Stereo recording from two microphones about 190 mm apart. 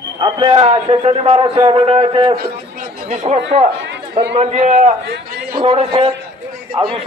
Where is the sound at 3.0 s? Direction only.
40° right (ahead or behind).